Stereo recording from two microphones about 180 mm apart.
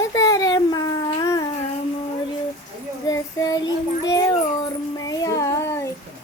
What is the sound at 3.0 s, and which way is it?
Child singing, 20° left (ahead or behind).